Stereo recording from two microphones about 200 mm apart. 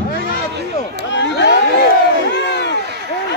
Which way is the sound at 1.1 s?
60° left (ahead or behind).